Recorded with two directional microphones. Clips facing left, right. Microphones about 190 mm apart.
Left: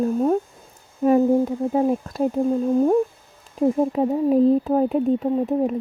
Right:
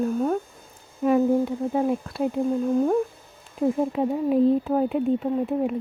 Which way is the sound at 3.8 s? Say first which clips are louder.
Left 4 dB; 35° left (ahead or behind).